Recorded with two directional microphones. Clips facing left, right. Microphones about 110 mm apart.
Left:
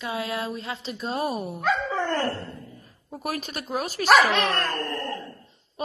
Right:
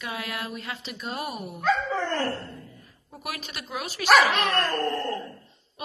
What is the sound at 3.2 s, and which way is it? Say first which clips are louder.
A woman's voice: left 5 dB; 40° left (ahead or behind).